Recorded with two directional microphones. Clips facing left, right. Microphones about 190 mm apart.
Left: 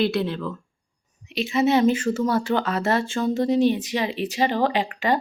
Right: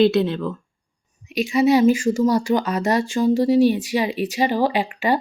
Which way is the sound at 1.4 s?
15° right (ahead or behind).